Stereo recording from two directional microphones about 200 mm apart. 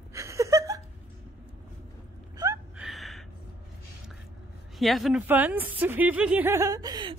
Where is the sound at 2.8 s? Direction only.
Centre (ahead or behind).